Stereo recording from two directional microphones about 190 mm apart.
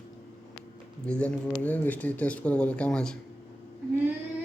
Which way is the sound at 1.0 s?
5° left (ahead or behind).